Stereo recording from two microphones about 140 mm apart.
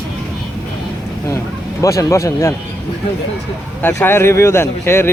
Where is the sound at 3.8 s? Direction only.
15° left (ahead or behind).